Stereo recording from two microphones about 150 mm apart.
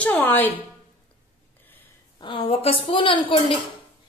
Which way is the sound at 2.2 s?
35° left (ahead or behind).